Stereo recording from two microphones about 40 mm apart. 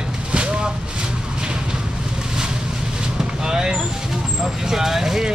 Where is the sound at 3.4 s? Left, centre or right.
Centre.